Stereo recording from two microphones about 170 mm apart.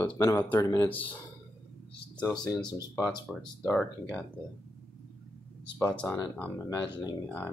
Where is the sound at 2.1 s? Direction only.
5° left (ahead or behind).